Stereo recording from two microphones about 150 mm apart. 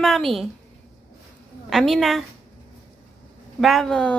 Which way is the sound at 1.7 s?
Centre (ahead or behind).